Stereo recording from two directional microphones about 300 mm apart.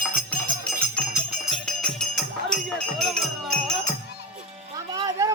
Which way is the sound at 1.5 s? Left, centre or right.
Centre.